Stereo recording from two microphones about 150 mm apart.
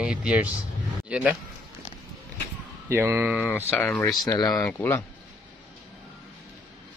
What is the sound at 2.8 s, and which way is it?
Speech, 15° right (ahead or behind).